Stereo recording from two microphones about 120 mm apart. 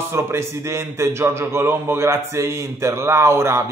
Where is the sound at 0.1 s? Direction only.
20° right (ahead or behind).